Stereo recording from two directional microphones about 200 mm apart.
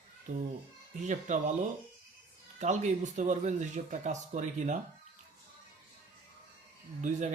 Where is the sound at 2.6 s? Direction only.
35° right (ahead or behind).